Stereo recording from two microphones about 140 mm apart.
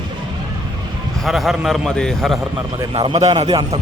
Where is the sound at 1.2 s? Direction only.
Centre (ahead or behind).